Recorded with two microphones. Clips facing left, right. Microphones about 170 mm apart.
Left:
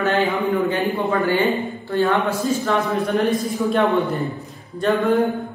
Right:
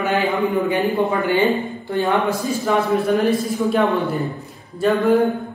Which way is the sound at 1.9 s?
15° right (ahead or behind).